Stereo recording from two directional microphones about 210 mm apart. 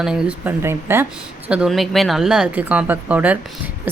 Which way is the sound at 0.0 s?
5° right (ahead or behind).